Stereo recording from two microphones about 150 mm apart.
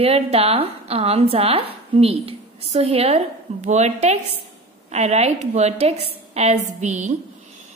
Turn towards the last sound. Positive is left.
turn(degrees=-50)  # may be behind; listen again after turning